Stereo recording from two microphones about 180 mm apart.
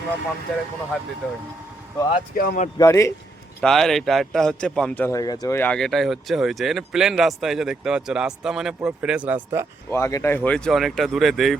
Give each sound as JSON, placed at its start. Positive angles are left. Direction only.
{"t": 0.5, "sound": "speech", "side_deg": 0}
{"t": 2.3, "sound": "speech", "side_deg": 55}
{"t": 2.7, "sound": "speech", "side_deg": 15}
{"t": 3.6, "sound": "speech", "side_deg": 5}
{"t": 9.9, "sound": "speech", "side_deg": 15}